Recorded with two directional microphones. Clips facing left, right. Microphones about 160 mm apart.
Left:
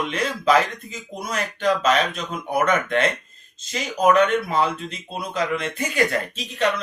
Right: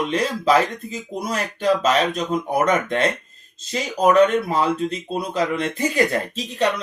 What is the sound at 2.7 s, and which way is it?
Speech, 35° right (ahead or behind).